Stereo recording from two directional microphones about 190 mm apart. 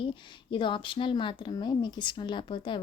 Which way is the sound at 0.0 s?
25° left (ahead or behind).